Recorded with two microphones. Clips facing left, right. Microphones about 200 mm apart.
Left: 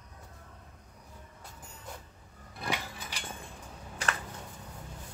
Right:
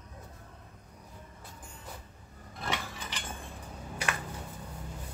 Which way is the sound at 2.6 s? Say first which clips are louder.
Even; 10° left (ahead or behind).